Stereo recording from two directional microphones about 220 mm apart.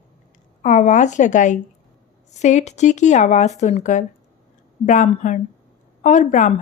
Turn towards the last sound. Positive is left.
turn(degrees=35)  # may be behind; listen again after turning